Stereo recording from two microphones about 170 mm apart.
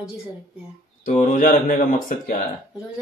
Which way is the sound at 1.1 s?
50° left (ahead or behind).